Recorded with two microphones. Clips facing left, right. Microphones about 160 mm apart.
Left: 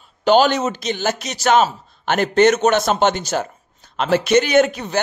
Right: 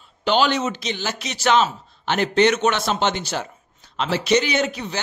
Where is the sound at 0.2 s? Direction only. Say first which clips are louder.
Left 5 dB; 45° left (ahead or behind).